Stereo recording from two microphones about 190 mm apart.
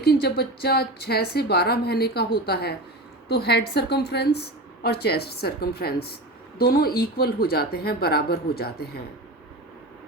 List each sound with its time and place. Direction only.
0.0 s a woman's voice: 60° left (ahead or behind)